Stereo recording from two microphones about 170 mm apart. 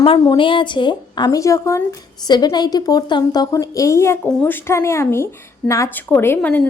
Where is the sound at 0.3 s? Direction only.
30° left (ahead or behind).